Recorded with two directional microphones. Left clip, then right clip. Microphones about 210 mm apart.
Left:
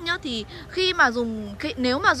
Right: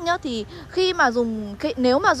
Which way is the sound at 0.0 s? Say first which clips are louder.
Right 3 dB; 20° right (ahead or behind).